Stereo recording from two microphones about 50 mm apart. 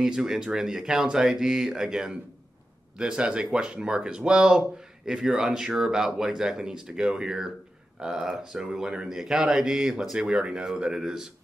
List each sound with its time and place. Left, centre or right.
0.0 s speech: centre